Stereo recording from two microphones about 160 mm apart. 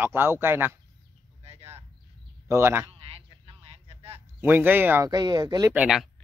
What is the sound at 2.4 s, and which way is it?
Speech, 15° right (ahead or behind).